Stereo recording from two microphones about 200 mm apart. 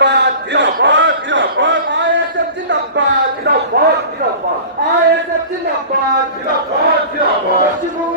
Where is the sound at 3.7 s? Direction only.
50° right (ahead or behind).